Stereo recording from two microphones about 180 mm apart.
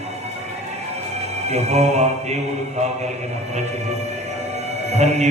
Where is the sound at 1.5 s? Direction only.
35° right (ahead or behind).